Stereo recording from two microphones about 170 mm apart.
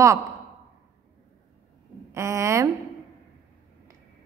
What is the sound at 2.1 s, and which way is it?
Speech, 15° right (ahead or behind).